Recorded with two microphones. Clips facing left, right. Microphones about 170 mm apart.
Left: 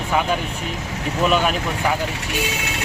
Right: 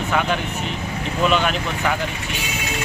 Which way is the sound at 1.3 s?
5° left (ahead or behind).